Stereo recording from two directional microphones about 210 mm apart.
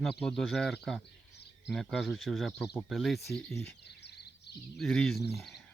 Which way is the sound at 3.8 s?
50° left (ahead or behind).